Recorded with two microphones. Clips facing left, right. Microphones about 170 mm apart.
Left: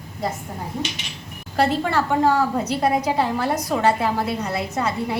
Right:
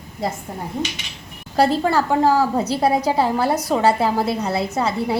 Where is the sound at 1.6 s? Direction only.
35° right (ahead or behind).